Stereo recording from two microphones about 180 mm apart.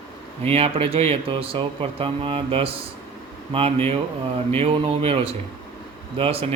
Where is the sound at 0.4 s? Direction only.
35° right (ahead or behind).